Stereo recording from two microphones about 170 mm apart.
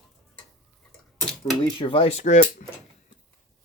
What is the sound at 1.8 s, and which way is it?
Speech, 30° left (ahead or behind).